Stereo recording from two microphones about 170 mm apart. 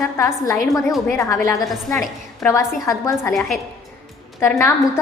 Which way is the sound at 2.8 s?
15° left (ahead or behind).